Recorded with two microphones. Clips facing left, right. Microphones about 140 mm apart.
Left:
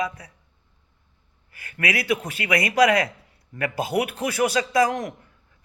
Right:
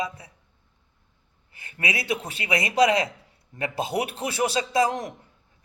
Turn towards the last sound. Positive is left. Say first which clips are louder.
# left 2 dB
turn(degrees=-25)  # may be behind; listen again after turning